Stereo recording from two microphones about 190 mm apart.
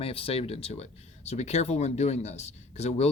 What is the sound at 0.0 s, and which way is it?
Speech, 30° left (ahead or behind).